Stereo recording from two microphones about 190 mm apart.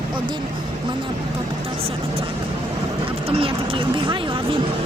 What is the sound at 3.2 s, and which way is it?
Speech, 30° right (ahead or behind).